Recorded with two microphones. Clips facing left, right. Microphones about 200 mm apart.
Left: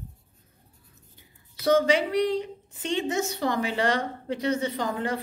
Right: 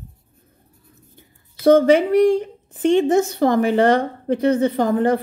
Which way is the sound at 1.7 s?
55° right (ahead or behind).